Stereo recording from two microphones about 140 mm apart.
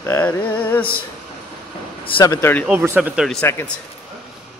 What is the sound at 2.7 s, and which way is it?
Speech, 15° right (ahead or behind).